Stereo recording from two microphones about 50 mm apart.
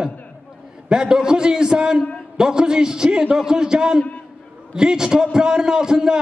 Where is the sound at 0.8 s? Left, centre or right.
Centre.